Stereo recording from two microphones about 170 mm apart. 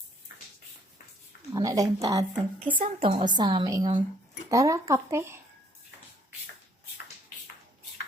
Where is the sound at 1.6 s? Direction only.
20° right (ahead or behind).